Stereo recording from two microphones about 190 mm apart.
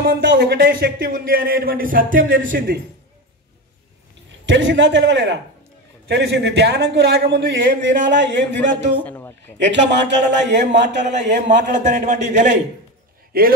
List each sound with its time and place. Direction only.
0.1 s speech: 70° right (ahead or behind); by 2.8 s 50° right (ahead or behind)
4.5 s a man's voice: 75° right (ahead or behind)
9.0 s a sound: 10° left (ahead or behind)
9.7 s a man's voice: 65° right (ahead or behind)
11.1 s a man's voice: 40° right (ahead or behind)
13.3 s speech: 50° right (ahead or behind)